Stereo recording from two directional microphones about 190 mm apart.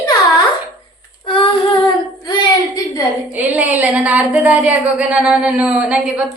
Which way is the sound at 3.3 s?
10° right (ahead or behind).